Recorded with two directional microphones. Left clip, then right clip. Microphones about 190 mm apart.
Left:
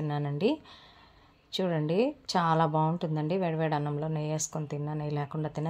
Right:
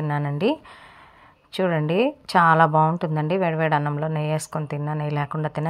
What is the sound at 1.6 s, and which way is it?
A woman's voice, 20° right (ahead or behind).